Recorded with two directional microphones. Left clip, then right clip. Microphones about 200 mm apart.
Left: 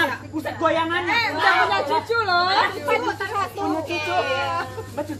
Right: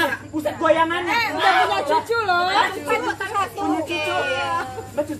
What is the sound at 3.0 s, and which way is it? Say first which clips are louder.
A woman's voice: right 1 dB; 10° left (ahead or behind).